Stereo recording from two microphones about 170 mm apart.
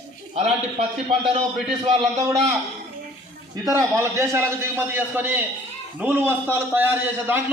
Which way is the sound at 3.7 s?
15° right (ahead or behind).